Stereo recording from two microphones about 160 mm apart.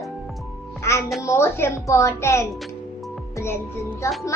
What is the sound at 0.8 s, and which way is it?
A child's voice, 15° left (ahead or behind).